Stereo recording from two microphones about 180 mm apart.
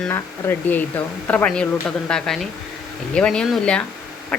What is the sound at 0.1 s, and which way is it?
A woman's voice, 10° left (ahead or behind).